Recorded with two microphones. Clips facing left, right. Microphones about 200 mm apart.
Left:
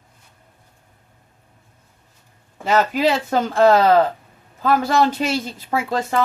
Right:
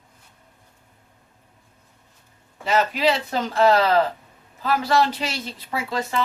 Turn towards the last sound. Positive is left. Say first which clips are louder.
# left 5 dB
turn(degrees=50)  # may be behind; listen again after turning